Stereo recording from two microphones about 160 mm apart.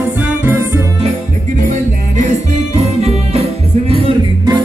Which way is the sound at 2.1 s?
50° right (ahead or behind).